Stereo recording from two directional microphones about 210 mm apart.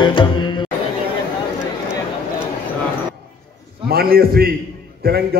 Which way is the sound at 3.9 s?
45° right (ahead or behind).